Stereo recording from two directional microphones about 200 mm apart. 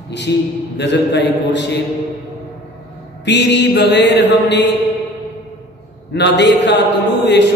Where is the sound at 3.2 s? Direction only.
60° left (ahead or behind).